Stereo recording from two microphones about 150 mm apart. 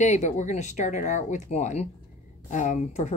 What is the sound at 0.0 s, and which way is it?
Speech, 50° left (ahead or behind).